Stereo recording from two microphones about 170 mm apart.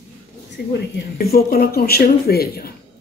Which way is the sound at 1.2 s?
65° left (ahead or behind).